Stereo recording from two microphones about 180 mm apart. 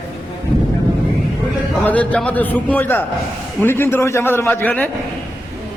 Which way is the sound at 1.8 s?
10° left (ahead or behind).